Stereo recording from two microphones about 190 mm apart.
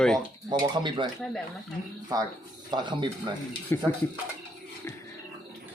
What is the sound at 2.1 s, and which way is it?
Speech, 20° right (ahead or behind).